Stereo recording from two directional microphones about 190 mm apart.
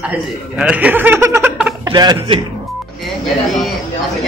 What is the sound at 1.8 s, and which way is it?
Speech, 20° right (ahead or behind).